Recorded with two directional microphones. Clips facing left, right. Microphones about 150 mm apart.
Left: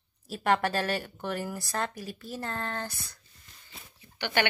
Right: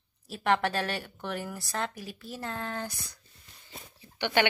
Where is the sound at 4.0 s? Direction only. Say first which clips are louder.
Right 2 dB; 20° right (ahead or behind).